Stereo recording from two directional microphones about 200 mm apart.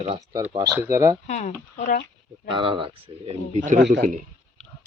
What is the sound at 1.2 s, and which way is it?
Speech, 35° left (ahead or behind).